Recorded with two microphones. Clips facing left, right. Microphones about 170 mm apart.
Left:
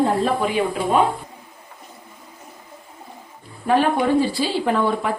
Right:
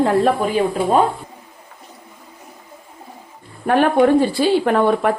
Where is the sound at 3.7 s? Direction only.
55° right (ahead or behind).